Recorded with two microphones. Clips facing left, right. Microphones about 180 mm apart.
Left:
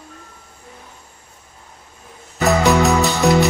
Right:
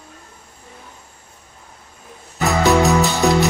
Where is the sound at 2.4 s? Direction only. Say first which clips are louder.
Left 1 dB; centre (ahead or behind).